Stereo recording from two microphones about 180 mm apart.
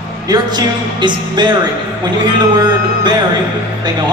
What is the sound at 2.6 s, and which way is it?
Speech, 25° right (ahead or behind).